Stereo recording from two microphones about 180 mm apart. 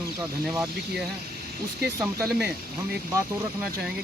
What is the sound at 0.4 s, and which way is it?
Speech, 10° right (ahead or behind).